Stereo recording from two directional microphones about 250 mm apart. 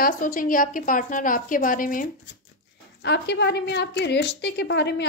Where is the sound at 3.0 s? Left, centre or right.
Left.